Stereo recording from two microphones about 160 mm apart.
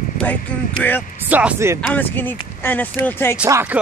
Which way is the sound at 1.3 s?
10° right (ahead or behind).